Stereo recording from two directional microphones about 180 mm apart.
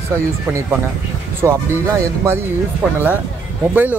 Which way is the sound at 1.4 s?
10° right (ahead or behind).